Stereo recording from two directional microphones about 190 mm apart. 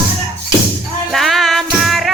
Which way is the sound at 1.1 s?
Centre (ahead or behind).